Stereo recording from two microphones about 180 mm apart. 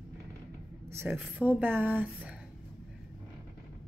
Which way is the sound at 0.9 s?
10° right (ahead or behind).